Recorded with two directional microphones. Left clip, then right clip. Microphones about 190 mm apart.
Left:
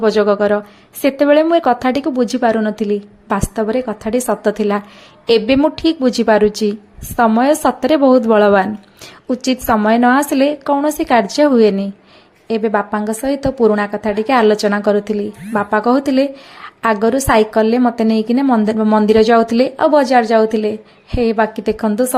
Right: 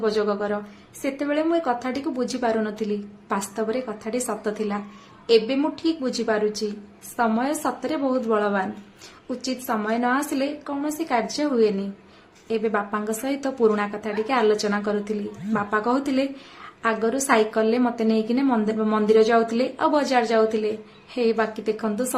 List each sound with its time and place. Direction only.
0.0 s a woman's voice: 40° left (ahead or behind)